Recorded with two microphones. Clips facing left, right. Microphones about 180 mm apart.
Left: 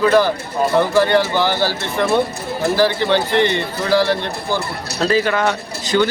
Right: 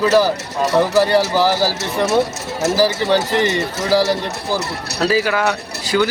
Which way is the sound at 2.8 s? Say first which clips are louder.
Even; 5° right (ahead or behind).